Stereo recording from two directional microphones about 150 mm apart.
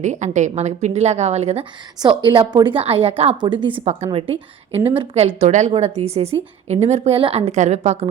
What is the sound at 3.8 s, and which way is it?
A woman's voice, 45° right (ahead or behind).